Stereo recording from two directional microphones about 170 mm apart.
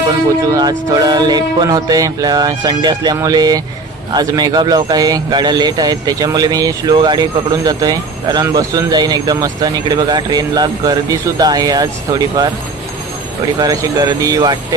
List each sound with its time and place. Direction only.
0.5 s speech: 25° right (ahead or behind)
13.6 s speech: 20° right (ahead or behind)